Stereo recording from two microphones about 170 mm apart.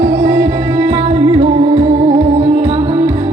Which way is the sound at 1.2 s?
30° right (ahead or behind).